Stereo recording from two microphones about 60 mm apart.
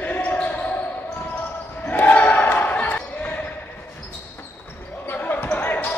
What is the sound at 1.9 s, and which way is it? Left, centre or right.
Basketball bounce, left.